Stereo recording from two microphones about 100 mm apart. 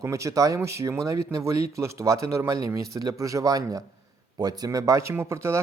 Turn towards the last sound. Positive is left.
turn(degrees=-25)  # may be behind; listen again after turning